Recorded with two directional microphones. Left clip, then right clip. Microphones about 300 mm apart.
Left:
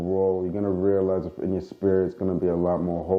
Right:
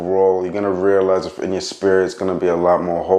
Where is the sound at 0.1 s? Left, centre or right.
Centre.